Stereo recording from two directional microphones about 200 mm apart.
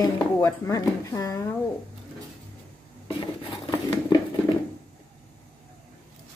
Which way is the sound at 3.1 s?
25° left (ahead or behind).